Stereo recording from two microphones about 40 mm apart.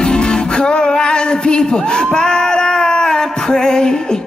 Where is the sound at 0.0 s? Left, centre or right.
Left.